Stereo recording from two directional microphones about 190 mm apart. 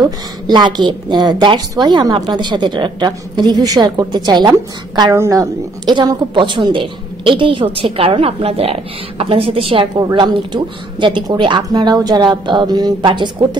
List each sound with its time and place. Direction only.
0.0 s a woman's voice: 25° right (ahead or behind)